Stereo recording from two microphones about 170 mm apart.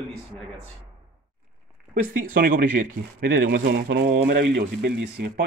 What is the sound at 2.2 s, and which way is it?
Speech, 55° right (ahead or behind).